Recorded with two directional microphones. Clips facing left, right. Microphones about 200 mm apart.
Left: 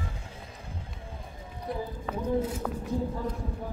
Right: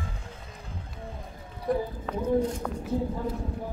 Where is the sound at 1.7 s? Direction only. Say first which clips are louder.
Right 7 dB; 50° right (ahead or behind).